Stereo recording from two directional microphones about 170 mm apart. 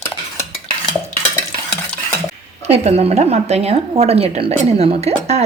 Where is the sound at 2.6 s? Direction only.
40° right (ahead or behind).